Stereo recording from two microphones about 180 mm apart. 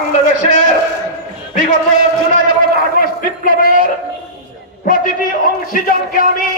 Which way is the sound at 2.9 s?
50° left (ahead or behind).